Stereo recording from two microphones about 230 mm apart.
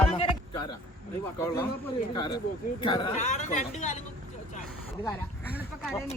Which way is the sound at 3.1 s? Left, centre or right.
Left.